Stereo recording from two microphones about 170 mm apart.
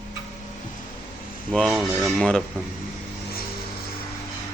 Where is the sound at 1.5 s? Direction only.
Centre (ahead or behind).